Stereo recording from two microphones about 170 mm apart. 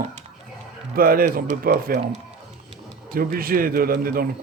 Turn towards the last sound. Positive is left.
turn(degrees=-60)  # may be behind; listen again after turning